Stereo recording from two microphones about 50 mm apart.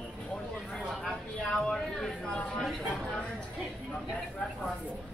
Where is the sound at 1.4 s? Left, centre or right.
Centre.